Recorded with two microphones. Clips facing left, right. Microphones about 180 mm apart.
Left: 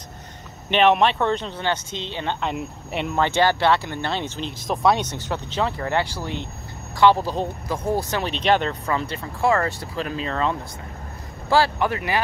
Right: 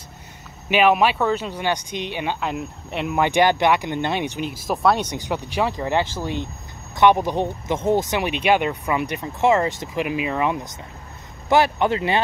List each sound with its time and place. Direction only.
0.7 s speech: 5° right (ahead or behind)
2.4 s speech: centre (ahead or behind)
3.2 s speech: 15° right (ahead or behind)